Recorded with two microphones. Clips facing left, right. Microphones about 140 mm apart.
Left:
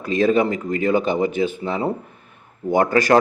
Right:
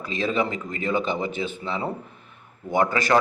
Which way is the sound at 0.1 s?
45° left (ahead or behind).